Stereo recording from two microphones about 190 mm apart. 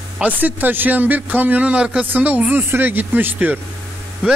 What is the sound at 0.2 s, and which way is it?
A man's voice, 10° right (ahead or behind).